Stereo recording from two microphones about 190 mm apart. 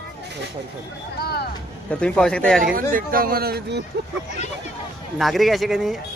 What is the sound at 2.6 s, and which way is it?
Speech, 50° right (ahead or behind).